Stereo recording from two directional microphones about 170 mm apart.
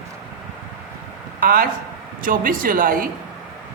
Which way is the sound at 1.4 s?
60° right (ahead or behind).